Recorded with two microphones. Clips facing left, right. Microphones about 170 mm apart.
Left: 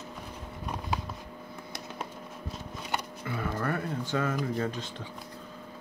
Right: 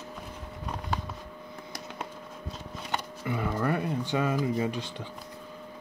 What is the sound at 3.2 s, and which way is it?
Speech, 15° right (ahead or behind).